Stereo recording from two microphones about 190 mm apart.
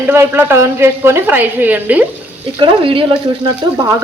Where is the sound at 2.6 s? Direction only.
30° right (ahead or behind).